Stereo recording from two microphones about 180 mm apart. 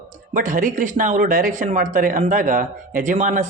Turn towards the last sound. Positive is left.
turn(degrees=-40)  # may be behind; listen again after turning